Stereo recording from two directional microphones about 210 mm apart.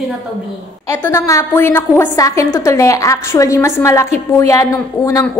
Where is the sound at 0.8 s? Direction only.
15° left (ahead or behind).